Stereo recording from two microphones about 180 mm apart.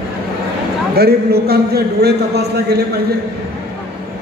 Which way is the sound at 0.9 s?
60° right (ahead or behind).